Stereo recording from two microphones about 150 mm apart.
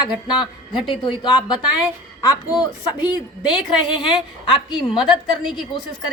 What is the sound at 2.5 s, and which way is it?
A woman's voice, 30° left (ahead or behind).